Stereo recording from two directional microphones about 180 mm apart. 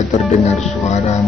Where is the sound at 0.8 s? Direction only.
40° left (ahead or behind).